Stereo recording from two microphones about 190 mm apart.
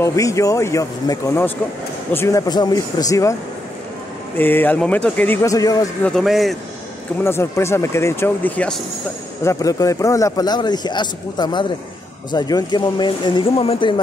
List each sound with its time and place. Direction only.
0.0 s speech: 15° left (ahead or behind)
4.4 s speech: 10° left (ahead or behind)
6.0 s speech: centre (ahead or behind)
7.2 s speech: 15° left (ahead or behind)
9.4 s a man's voice: 15° left (ahead or behind)